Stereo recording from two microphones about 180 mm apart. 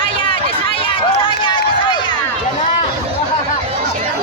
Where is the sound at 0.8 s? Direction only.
30° left (ahead or behind).